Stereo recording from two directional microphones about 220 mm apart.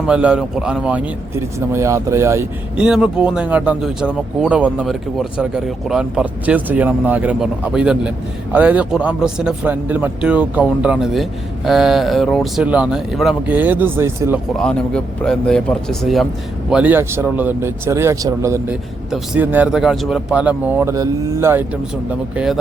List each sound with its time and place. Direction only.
0.1 s speech: 5° right (ahead or behind)
14.5 s speech: 5° left (ahead or behind)